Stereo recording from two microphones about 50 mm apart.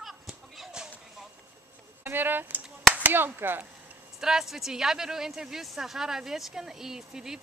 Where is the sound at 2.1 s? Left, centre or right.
Right.